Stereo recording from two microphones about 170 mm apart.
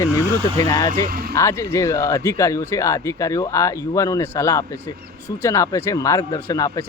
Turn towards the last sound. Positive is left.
turn(degrees=20)  # may be behind; listen again after turning